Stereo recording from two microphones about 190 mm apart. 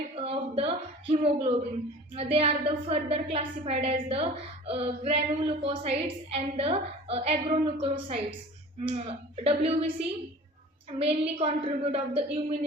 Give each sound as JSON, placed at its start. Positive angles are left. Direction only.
{"t": 0.2, "sound": "a woman's voice", "side_deg": -30}